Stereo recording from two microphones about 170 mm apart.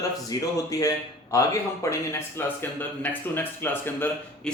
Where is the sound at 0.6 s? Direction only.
20° left (ahead or behind).